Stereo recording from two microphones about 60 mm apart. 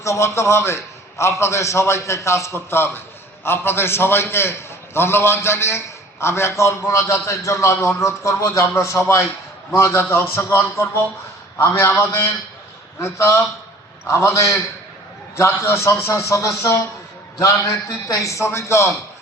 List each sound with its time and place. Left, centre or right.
0.0 s a man's voice: left
18.3 s a man's voice: left